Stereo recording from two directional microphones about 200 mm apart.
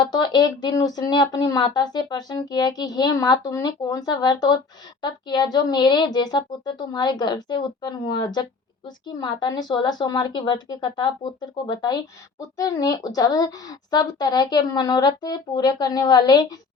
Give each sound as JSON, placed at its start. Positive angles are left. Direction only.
{"t": 0.0, "sound": "speech", "side_deg": 20}